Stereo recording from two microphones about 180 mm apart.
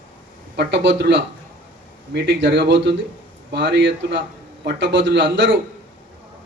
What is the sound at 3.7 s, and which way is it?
Speech, 75° right (ahead or behind).